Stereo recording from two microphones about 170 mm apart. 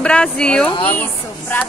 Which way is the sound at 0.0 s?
5° left (ahead or behind).